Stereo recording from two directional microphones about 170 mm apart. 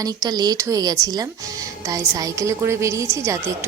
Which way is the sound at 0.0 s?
20° right (ahead or behind).